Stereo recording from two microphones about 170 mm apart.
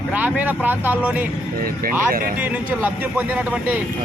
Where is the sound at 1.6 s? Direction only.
60° right (ahead or behind).